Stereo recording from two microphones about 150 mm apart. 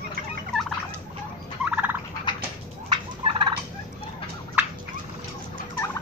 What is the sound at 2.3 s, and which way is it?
Cat, 30° left (ahead or behind).